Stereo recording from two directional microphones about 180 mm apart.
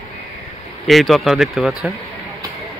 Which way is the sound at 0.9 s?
Centre (ahead or behind).